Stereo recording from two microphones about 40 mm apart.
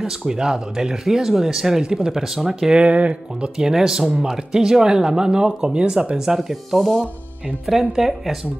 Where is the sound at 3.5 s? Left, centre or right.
Centre.